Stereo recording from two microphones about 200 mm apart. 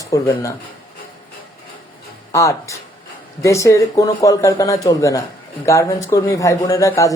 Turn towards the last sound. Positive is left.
turn(degrees=15)  # may be behind; listen again after turning